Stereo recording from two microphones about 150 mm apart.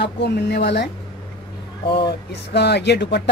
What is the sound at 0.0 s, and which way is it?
Speech, 90° left.